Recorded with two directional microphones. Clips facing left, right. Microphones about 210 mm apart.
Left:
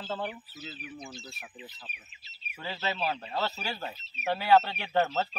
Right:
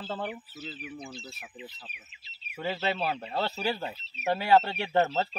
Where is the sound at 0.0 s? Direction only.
20° right (ahead or behind).